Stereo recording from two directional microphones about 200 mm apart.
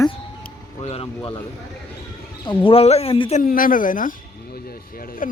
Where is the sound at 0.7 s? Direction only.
30° left (ahead or behind).